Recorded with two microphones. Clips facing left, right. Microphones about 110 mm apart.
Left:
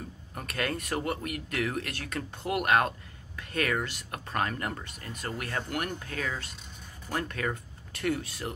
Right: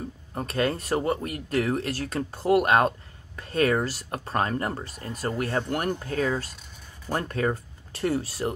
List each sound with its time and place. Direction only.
0.3 s speech: 30° right (ahead or behind)